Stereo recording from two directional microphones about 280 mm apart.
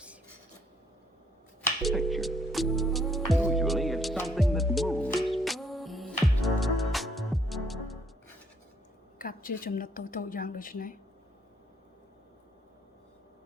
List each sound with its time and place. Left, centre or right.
1.8 s music: centre
9.1 s a woman's voice: left